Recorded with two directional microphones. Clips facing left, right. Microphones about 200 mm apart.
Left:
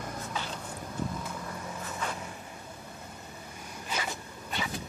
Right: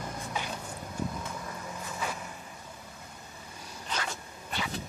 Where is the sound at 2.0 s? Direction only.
10° right (ahead or behind).